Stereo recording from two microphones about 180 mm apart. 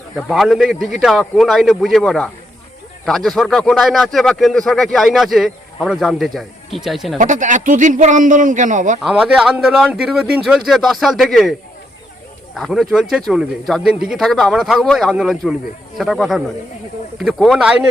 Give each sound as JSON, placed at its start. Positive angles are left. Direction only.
{"t": 0.2, "sound": "speech", "side_deg": 0}
{"t": 7.2, "sound": "a man's voice", "side_deg": -45}
{"t": 9.0, "sound": "speech", "side_deg": -5}
{"t": 12.5, "sound": "speech", "side_deg": 0}